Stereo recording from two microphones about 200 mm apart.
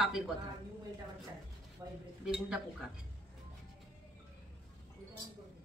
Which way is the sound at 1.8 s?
20° right (ahead or behind).